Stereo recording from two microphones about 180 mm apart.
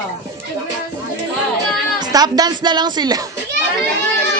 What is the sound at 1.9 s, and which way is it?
Speech, 20° right (ahead or behind).